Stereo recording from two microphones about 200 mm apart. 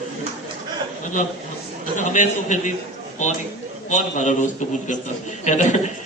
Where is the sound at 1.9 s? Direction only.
40° left (ahead or behind).